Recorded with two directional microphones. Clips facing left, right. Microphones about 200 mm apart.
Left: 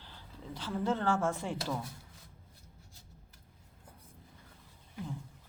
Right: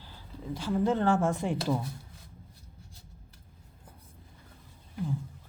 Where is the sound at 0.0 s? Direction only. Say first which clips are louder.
Right 6 dB; 10° right (ahead or behind).